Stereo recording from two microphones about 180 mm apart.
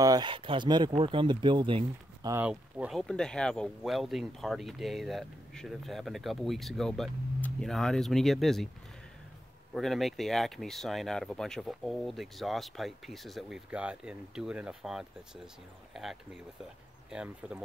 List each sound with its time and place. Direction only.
0.0 s speech: 20° right (ahead or behind)
2.3 s speech: 5° right (ahead or behind)
3.0 s speech: 5° left (ahead or behind)
9.8 s speech: centre (ahead or behind)